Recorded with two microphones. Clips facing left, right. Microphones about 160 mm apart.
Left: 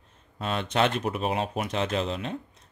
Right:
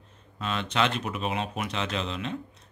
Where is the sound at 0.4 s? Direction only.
50° left (ahead or behind).